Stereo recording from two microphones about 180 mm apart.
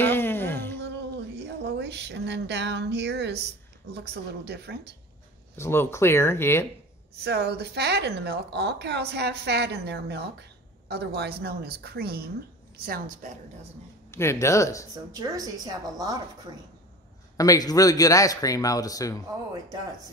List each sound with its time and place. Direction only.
0.0 s a sound: 10° left (ahead or behind)
1.6 s a woman's voice: 70° right (ahead or behind)
5.6 s speech: 15° left (ahead or behind)
7.2 s a woman's voice: 65° right (ahead or behind)
14.1 s speech: 15° left (ahead or behind)
15.1 s a woman's voice: 20° right (ahead or behind)
17.4 s speech: 20° left (ahead or behind)